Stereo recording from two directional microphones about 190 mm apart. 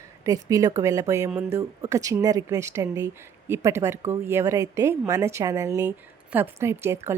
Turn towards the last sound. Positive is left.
turn(degrees=-15)  # may be behind; listen again after turning